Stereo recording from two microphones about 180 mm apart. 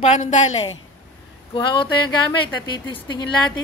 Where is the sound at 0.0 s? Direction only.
40° left (ahead or behind).